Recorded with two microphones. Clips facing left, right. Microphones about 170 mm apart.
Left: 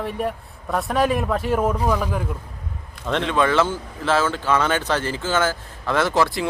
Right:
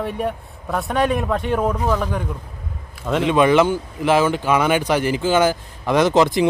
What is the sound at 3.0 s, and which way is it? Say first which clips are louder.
Speech: right 4 dB; 5° right (ahead or behind).